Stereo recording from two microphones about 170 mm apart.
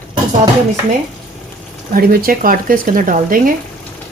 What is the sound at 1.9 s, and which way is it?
Speech, 60° right (ahead or behind).